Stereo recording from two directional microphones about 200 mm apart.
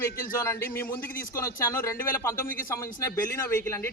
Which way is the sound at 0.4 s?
10° left (ahead or behind).